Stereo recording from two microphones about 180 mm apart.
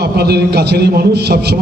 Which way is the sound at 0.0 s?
65° right (ahead or behind).